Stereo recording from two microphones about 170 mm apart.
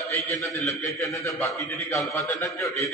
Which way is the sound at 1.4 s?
15° left (ahead or behind).